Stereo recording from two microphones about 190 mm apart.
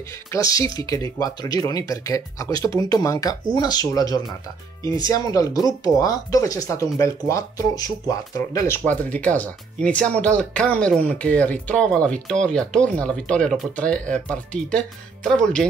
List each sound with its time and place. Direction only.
0.3 s speech: 20° left (ahead or behind)